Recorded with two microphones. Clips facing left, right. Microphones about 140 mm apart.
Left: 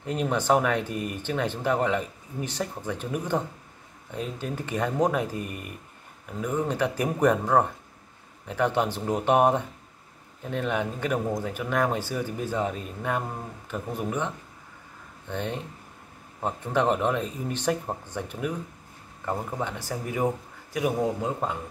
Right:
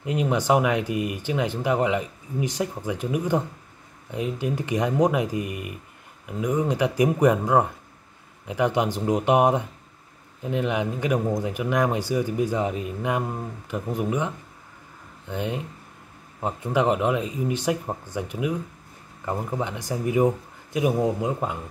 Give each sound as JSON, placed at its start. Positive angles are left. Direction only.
{"t": 0.0, "sound": "speech", "side_deg": -10}